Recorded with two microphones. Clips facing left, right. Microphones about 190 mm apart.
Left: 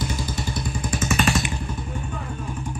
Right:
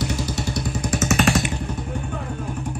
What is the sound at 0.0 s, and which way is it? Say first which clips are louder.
Motorcycle: right 3 dB; 75° right (ahead or behind).